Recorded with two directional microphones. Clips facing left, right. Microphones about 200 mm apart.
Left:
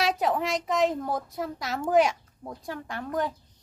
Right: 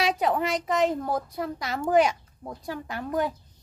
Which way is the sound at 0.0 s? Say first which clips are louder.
Right 1 dB; centre (ahead or behind).